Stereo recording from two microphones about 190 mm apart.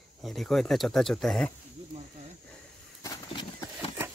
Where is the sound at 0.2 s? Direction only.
Centre (ahead or behind).